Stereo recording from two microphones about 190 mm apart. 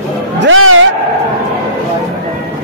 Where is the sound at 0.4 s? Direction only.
90° right.